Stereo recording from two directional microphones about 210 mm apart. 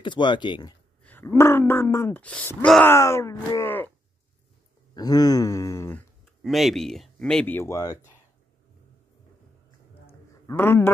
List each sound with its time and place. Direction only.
0.0 s speech: 20° left (ahead or behind)
1.0 s wail: 10° left (ahead or behind)
4.9 s wail: 20° left (ahead or behind)
6.4 s speech: centre (ahead or behind)
10.4 s a man's voice: 10° left (ahead or behind)